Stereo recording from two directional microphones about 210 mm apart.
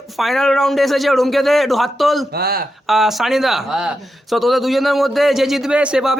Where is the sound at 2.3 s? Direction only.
45° right (ahead or behind).